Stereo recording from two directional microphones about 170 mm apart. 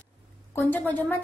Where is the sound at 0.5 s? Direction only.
10° left (ahead or behind).